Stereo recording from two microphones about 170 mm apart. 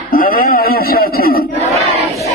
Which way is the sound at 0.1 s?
55° left (ahead or behind).